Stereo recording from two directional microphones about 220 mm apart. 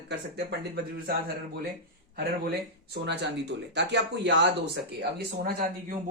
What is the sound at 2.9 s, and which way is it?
Speech, 50° right (ahead or behind).